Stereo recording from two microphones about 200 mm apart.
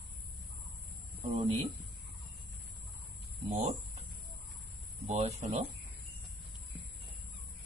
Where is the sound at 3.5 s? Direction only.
35° right (ahead or behind).